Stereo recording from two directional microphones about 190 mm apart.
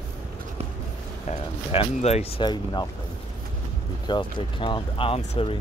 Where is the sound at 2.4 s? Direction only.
20° left (ahead or behind).